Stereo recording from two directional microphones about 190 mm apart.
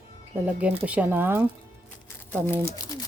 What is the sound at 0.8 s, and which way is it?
Speech, 5° right (ahead or behind).